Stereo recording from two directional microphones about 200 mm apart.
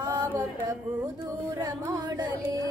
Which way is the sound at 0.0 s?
20° right (ahead or behind).